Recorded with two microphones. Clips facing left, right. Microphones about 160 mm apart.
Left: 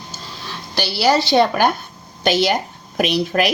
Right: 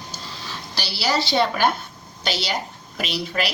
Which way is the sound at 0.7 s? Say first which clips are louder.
Left 7 dB; 55° left (ahead or behind).